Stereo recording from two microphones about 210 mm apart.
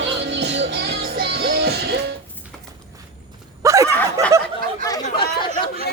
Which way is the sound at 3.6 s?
15° right (ahead or behind).